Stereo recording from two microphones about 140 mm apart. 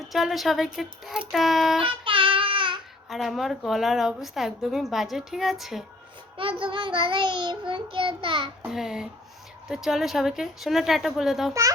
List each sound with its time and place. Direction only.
0.0 s a woman's voice: centre (ahead or behind)
1.8 s child singing: 40° right (ahead or behind)
3.1 s a woman's voice: centre (ahead or behind)
6.3 s child singing: 40° right (ahead or behind)
8.6 s a woman's voice: 5° right (ahead or behind)